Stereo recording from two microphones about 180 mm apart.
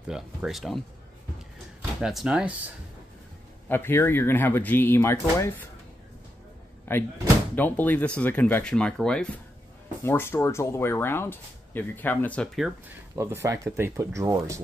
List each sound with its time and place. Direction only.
0.1 s speech: centre (ahead or behind)
2.0 s speech: centre (ahead or behind)
3.6 s speech: 10° left (ahead or behind)
6.9 s speech: 10° left (ahead or behind)
13.1 s speech: 15° right (ahead or behind)